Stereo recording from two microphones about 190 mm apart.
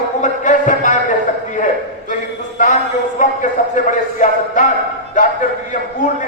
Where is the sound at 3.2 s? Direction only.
40° left (ahead or behind).